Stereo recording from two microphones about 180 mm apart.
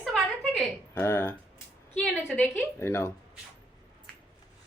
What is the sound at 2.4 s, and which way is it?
Speech, 15° left (ahead or behind).